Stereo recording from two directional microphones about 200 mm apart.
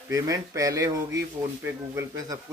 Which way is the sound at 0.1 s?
15° right (ahead or behind).